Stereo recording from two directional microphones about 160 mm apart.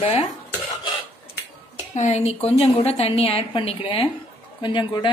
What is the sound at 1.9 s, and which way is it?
A woman's voice, 45° left (ahead or behind).